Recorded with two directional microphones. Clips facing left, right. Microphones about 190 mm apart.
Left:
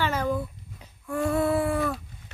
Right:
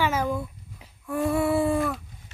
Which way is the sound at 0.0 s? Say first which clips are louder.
Right 1 dB; 10° right (ahead or behind).